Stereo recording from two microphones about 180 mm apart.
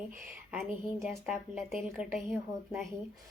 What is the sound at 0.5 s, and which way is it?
A woman's voice, centre (ahead or behind).